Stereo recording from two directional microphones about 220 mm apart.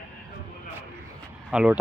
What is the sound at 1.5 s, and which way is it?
Speech, 5° right (ahead or behind).